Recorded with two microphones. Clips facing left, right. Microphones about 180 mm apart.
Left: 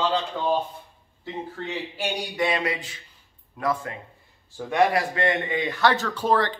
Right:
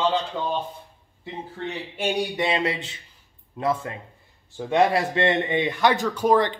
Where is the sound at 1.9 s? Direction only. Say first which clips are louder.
Right 8 dB; 25° right (ahead or behind).